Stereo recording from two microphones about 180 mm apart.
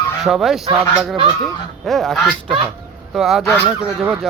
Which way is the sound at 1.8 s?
Centre (ahead or behind).